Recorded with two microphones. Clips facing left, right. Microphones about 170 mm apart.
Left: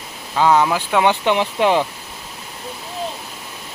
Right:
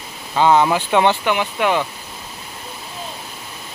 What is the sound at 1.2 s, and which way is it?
Speech, 30° left (ahead or behind).